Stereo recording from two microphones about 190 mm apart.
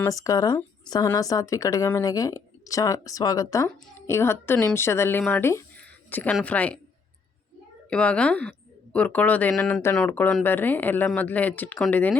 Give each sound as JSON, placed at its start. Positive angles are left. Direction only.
{"t": 0.0, "sound": "speech", "side_deg": 15}
{"t": 7.9, "sound": "a child's voice", "side_deg": 5}